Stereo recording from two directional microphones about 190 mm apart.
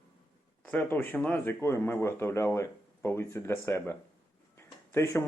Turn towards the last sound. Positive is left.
turn(degrees=15)  # may be behind; listen again after turning